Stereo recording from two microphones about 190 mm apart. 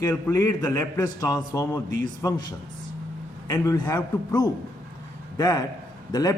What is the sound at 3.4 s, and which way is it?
A man's voice, 20° left (ahead or behind).